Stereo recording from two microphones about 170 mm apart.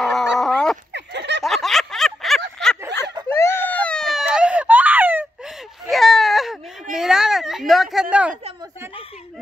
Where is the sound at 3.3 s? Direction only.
15° left (ahead or behind); by 5.2 s 10° right (ahead or behind).